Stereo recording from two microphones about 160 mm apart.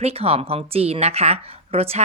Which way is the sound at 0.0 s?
40° right (ahead or behind).